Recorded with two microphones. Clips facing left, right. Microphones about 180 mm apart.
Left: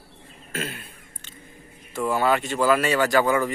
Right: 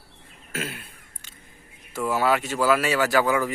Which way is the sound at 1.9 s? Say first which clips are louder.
Left 1 dB; 5° right (ahead or behind).